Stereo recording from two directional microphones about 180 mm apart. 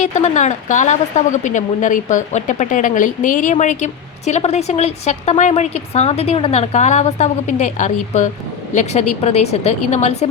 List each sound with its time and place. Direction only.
0.0 s a woman's voice: 40° left (ahead or behind)